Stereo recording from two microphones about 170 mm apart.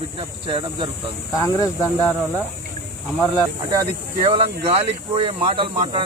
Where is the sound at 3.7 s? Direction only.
20° right (ahead or behind).